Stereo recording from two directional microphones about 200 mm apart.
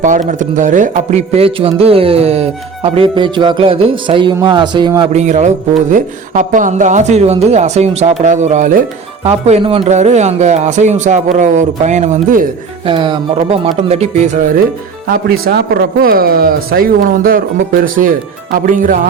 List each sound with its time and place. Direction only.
0.0 s a man's voice: 40° right (ahead or behind); by 5.0 s 20° right (ahead or behind)
5.1 s a man's voice: 35° right (ahead or behind)
12.8 s a man's voice: 25° right (ahead or behind)
15.0 s speech: 50° right (ahead or behind)